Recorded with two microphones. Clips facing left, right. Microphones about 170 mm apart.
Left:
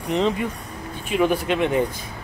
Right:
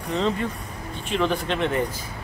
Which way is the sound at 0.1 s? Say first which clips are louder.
Left 3 dB; 15° left (ahead or behind).